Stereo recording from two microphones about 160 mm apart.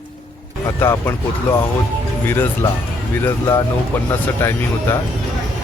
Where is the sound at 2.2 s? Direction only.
15° left (ahead or behind).